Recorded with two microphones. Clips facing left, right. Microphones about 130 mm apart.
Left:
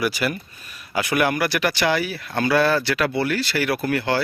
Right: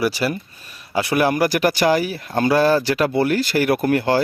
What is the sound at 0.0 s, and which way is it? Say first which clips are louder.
Speech: right 3 dB; 30° right (ahead or behind).